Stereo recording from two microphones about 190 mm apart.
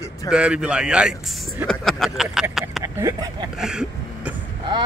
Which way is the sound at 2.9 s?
15° right (ahead or behind).